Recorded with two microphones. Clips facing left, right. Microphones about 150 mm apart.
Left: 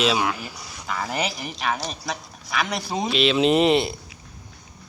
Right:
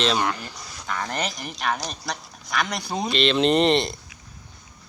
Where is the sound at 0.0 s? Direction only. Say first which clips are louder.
Left 1 dB; 5° left (ahead or behind).